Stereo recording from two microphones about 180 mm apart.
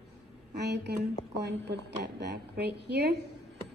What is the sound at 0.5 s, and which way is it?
A woman's voice, 70° right (ahead or behind).